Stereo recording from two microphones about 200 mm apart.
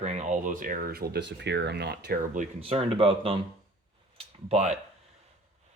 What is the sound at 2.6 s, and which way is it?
Speech, 30° right (ahead or behind).